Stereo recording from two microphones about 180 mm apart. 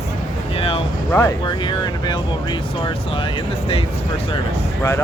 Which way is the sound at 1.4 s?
25° left (ahead or behind).